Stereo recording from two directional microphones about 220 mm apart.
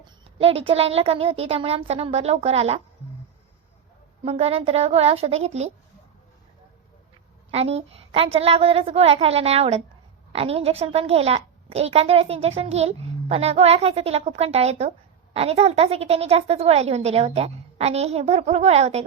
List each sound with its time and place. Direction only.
0.0 s a sound: 25° right (ahead or behind)
0.7 s a woman's voice: 25° right (ahead or behind)
4.2 s a woman's voice: 30° right (ahead or behind)
7.5 s a woman's voice: 30° right (ahead or behind)